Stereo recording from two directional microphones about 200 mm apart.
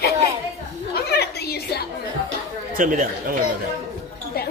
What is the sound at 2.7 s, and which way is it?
Speech, 40° right (ahead or behind).